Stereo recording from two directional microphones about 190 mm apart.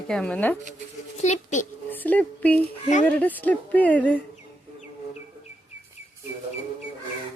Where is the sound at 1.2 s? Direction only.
40° left (ahead or behind).